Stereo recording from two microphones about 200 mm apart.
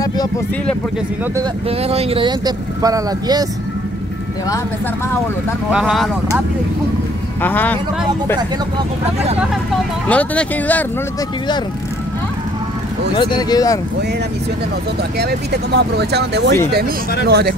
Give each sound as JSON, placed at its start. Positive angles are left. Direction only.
{"t": 1.7, "sound": "speech", "side_deg": -30}
{"t": 5.7, "sound": "speech", "side_deg": -5}
{"t": 7.4, "sound": "speech", "side_deg": 10}
{"t": 10.0, "sound": "speech", "side_deg": 5}
{"t": 13.2, "sound": "speech", "side_deg": 20}
{"t": 15.1, "sound": "speech", "side_deg": -55}